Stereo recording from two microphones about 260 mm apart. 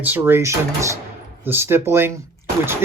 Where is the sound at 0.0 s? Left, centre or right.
Centre.